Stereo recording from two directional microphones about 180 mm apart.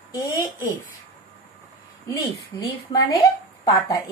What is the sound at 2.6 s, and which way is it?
Speech, 20° left (ahead or behind).